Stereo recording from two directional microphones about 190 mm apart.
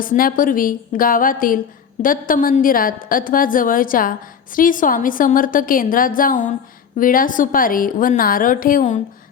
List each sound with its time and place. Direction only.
0.0 s a woman's voice: 45° left (ahead or behind)